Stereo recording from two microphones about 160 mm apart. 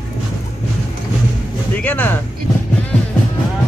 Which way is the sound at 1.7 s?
10° left (ahead or behind).